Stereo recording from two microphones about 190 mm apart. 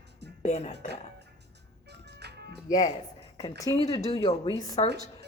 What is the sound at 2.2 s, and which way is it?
Music, 60° right (ahead or behind).